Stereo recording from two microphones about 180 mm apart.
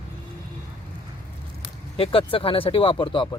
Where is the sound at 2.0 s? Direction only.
30° left (ahead or behind).